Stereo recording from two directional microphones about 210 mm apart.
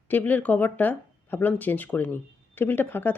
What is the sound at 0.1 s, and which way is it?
Speech, 10° left (ahead or behind).